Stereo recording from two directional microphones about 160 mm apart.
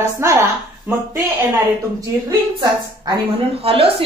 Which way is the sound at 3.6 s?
35° right (ahead or behind).